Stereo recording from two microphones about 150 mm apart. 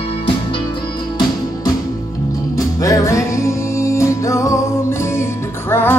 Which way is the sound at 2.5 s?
20° left (ahead or behind).